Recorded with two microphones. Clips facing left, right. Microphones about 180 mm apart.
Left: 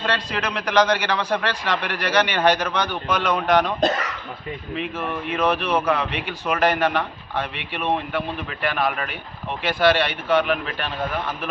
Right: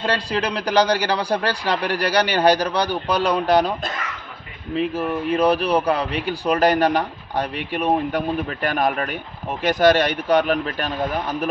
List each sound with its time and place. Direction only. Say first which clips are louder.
0.0 s speech: right 3 dB; 35° right (ahead or behind)
3.8 s speech: left 8 dB; 40° left (ahead or behind)
4.7 s speech: right 7 dB; 35° right (ahead or behind)